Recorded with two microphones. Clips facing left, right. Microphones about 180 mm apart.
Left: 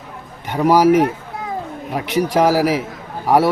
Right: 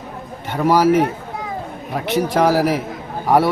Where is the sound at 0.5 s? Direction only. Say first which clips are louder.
Left 2 dB; 15° left (ahead or behind).